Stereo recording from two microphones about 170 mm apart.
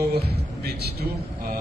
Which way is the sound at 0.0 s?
70° right (ahead or behind).